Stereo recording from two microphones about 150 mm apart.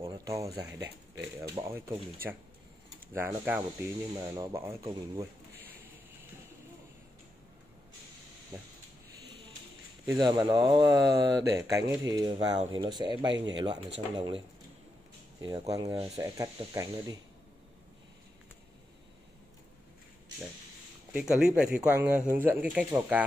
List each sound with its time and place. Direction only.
0.1 s a sound: 20° right (ahead or behind)
1.5 s speech: 20° right (ahead or behind)
3.1 s speech: 15° right (ahead or behind)
4.1 s speech: 25° right (ahead or behind)
10.0 s speech: 30° right (ahead or behind)
15.4 s speech: 25° right (ahead or behind)
21.1 s speech: 5° right (ahead or behind)